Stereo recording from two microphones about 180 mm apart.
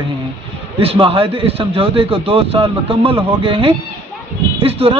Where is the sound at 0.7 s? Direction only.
30° right (ahead or behind).